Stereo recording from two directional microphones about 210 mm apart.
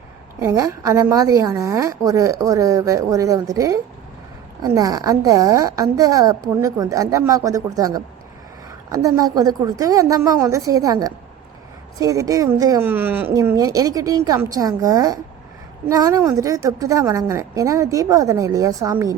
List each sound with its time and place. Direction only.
0.3 s a woman's voice: 15° right (ahead or behind)